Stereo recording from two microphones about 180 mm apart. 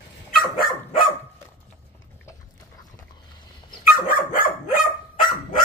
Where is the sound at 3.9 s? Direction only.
50° left (ahead or behind).